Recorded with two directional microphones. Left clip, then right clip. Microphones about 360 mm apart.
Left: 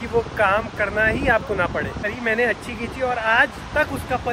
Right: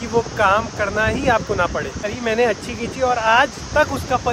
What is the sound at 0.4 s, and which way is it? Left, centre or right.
Speech, centre.